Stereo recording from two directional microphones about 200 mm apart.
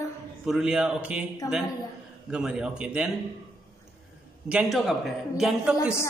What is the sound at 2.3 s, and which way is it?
Speech, 5° right (ahead or behind).